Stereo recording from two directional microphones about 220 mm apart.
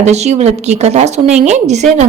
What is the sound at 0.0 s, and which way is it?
A woman's voice, 30° right (ahead or behind).